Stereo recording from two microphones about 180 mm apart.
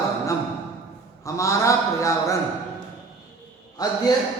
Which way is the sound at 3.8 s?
20° left (ahead or behind).